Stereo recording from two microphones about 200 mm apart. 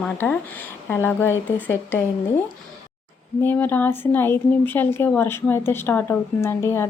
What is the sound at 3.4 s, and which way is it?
A woman's voice, 10° left (ahead or behind).